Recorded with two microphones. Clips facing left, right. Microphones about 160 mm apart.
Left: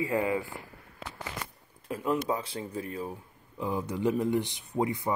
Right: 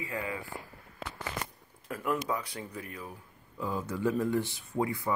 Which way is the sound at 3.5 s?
20° left (ahead or behind).